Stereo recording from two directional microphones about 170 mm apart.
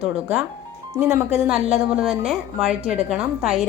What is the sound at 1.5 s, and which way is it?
Speech, 35° right (ahead or behind).